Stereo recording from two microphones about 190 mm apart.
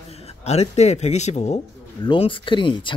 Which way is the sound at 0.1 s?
35° left (ahead or behind).